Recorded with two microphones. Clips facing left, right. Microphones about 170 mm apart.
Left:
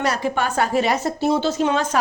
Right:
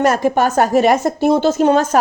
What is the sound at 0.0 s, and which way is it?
A woman's voice, 45° right (ahead or behind).